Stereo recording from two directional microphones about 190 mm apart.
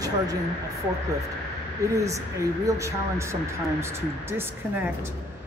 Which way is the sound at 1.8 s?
15° right (ahead or behind).